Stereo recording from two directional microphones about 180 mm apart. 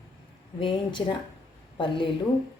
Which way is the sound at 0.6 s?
25° left (ahead or behind).